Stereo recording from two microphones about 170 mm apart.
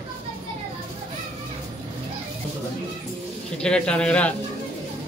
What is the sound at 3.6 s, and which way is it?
Speech, 5° left (ahead or behind).